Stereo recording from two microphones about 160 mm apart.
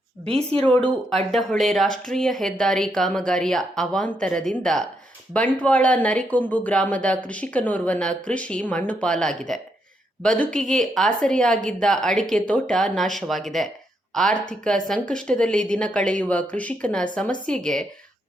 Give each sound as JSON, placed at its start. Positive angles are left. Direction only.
{"t": 0.3, "sound": "a woman's voice", "side_deg": -40}
{"t": 0.6, "sound": "speech", "side_deg": 5}